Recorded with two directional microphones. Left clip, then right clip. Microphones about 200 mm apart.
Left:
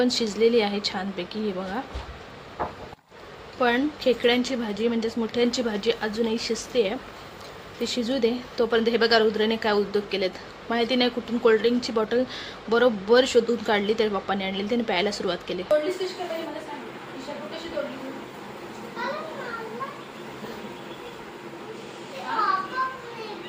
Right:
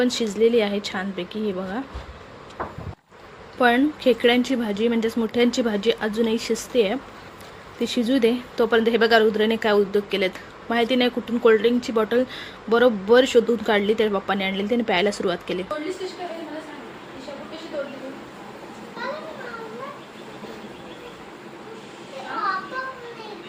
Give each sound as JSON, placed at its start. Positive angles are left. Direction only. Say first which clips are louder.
{"t": 0.0, "sound": "a woman's voice", "louder": "right 2 dB", "side_deg": -15}
{"t": 3.6, "sound": "a woman's voice", "louder": "right 4 dB", "side_deg": -20}